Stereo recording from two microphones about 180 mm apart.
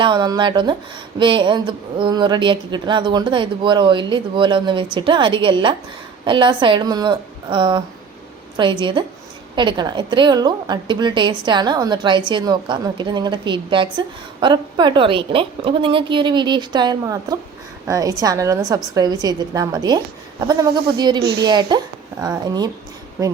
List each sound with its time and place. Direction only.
0.0 s speech: 25° right (ahead or behind)
21.2 s a woman's voice: 65° right (ahead or behind)
21.4 s speech: 25° right (ahead or behind)